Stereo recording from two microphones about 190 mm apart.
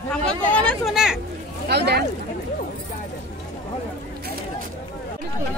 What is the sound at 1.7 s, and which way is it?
Speech, 60° right (ahead or behind).